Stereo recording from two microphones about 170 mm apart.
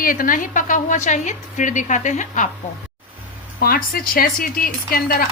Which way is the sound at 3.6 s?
60° left (ahead or behind).